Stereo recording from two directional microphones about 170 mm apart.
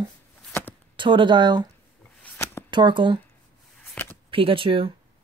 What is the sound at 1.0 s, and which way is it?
Speech, 30° right (ahead or behind).